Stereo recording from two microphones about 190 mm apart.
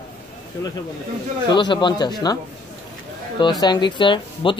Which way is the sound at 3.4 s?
25° left (ahead or behind).